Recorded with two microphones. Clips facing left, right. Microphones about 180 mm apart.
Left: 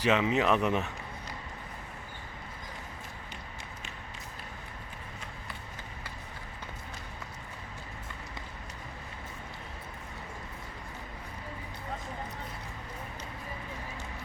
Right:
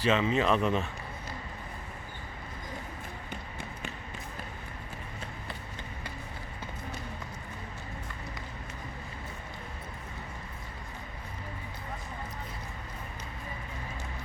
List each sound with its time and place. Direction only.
0.0 s speech: 15° left (ahead or behind)